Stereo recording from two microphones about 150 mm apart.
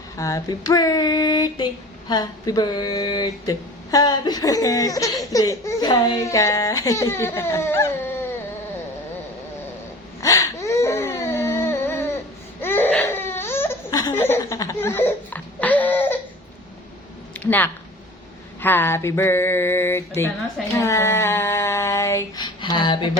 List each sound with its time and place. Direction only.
0.2 s speech: 20° left (ahead or behind)
10.2 s a sound: 20° left (ahead or behind)
12.6 s baby cry: 15° left (ahead or behind)
14.0 s laughter: 15° left (ahead or behind)
17.4 s speech: 10° left (ahead or behind)
18.6 s a sound: 15° left (ahead or behind)
20.7 s female singing: 20° left (ahead or behind)